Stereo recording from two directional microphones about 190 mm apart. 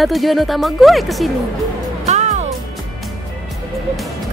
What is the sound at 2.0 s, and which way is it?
Music, 35° right (ahead or behind).